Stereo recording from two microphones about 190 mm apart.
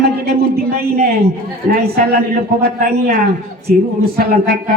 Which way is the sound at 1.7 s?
50° right (ahead or behind).